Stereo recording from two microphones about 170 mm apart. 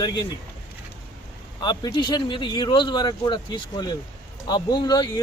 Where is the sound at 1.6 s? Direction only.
25° left (ahead or behind).